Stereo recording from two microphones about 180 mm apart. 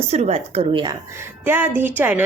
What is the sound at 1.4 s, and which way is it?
Speech, 10° right (ahead or behind).